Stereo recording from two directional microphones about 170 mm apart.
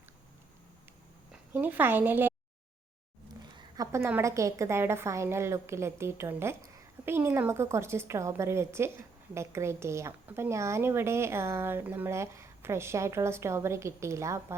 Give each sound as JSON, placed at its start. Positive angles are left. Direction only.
{"t": 1.3, "sound": "a woman's voice", "side_deg": -10}
{"t": 3.8, "sound": "a woman's voice", "side_deg": -15}